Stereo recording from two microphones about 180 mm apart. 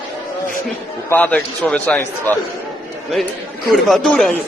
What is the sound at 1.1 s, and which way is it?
A man's voice, 10° left (ahead or behind).